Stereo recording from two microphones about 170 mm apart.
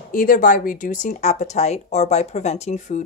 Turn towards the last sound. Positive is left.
turn(degrees=45)  # may be behind; listen again after turning